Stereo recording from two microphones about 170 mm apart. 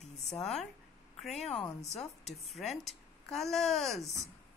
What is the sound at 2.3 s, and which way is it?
Speech, centre (ahead or behind).